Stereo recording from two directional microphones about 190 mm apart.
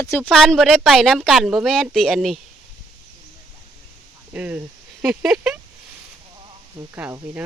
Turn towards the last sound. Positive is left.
turn(degrees=-10)  # may be behind; listen again after turning